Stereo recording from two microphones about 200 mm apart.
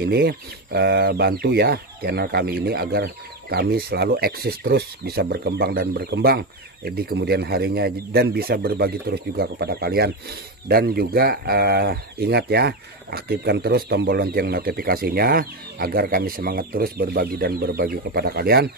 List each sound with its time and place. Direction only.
0.0 s speech: 55° right (ahead or behind)